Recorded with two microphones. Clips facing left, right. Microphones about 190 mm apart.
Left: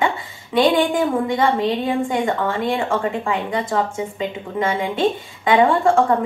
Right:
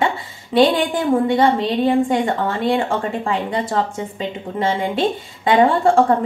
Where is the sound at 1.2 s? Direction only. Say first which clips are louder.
Right 2 dB; 35° right (ahead or behind).